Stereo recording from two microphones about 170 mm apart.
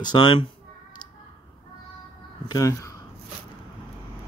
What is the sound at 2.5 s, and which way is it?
Speech, 20° left (ahead or behind).